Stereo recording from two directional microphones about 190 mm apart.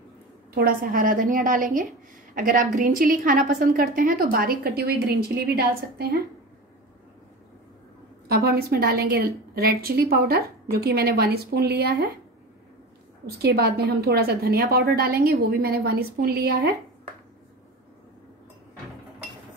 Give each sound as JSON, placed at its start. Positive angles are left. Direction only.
{"t": 0.6, "sound": "a woman's voice", "side_deg": -50}
{"t": 8.3, "sound": "a woman's voice", "side_deg": -55}
{"t": 13.4, "sound": "a woman's voice", "side_deg": -55}